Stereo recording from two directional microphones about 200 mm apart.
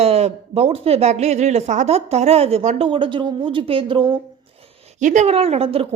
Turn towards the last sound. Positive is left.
turn(degrees=-30)  # may be behind; listen again after turning